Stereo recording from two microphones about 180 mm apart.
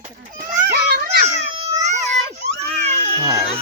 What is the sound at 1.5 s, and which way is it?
Baby cry, 35° right (ahead or behind).